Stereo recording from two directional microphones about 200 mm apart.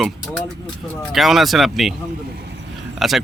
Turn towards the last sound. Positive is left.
turn(degrees=0)  # may be behind; listen again after turning